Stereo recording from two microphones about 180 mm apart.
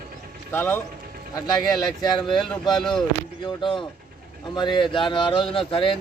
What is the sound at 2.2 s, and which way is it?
Speech, centre (ahead or behind).